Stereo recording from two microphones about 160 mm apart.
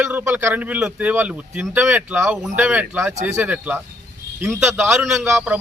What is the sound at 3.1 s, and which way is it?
Speech, 45° right (ahead or behind).